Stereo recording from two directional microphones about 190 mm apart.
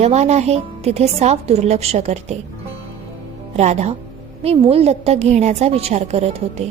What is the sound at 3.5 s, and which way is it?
Speech, 35° right (ahead or behind).